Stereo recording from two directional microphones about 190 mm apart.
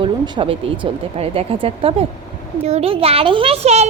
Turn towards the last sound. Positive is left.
turn(degrees=-35)  # may be behind; listen again after turning